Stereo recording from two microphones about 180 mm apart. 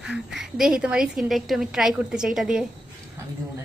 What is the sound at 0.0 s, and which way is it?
A woman's voice, centre (ahead or behind).